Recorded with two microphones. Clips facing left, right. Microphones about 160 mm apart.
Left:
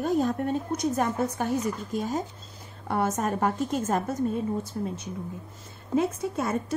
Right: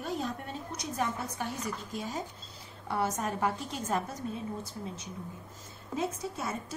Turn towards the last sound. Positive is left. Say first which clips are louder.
# left 8 dB
turn(degrees=55)  # may be behind; listen again after turning